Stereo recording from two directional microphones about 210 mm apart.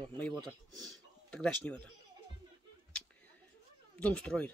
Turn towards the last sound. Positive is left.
turn(degrees=5)  # may be behind; listen again after turning